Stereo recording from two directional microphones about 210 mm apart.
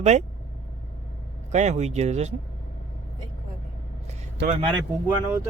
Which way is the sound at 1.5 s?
35° right (ahead or behind).